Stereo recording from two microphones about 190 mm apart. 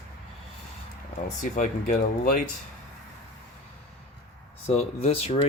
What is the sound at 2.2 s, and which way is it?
Speech, 45° left (ahead or behind).